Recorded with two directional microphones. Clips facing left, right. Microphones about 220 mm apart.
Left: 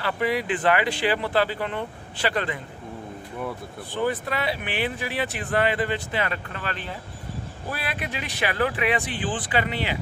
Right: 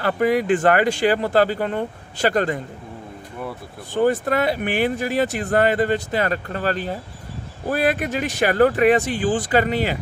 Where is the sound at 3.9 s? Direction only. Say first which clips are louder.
Right 7 dB; 45° right (ahead or behind).